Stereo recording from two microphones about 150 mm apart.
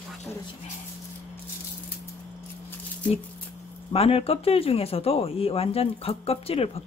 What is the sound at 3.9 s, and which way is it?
Speech, 40° left (ahead or behind).